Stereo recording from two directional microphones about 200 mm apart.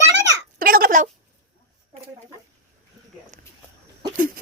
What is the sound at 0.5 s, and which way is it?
Speech, 45° right (ahead or behind).